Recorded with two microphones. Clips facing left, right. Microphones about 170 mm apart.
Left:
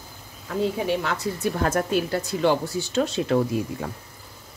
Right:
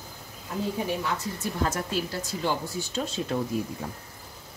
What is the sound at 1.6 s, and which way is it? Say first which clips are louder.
Speech: left 6 dB; 55° left (ahead or behind).